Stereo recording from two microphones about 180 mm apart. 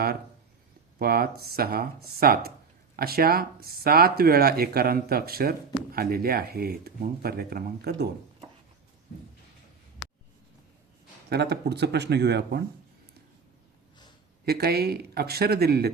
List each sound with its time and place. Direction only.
0.9 s speech: 55° right (ahead or behind)
11.3 s speech: 65° right (ahead or behind)
14.4 s speech: 60° right (ahead or behind)